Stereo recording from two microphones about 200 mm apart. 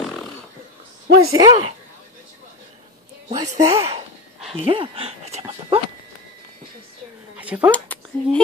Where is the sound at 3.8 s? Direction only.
30° right (ahead or behind).